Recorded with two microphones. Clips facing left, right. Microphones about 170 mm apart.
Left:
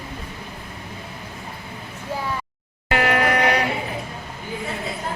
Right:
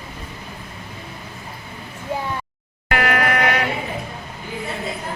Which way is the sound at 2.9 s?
25° left (ahead or behind).